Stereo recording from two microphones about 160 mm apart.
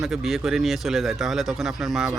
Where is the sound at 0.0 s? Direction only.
5° right (ahead or behind).